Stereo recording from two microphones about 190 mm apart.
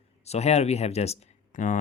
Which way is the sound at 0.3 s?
35° left (ahead or behind).